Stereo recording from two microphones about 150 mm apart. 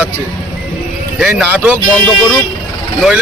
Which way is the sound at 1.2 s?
10° right (ahead or behind).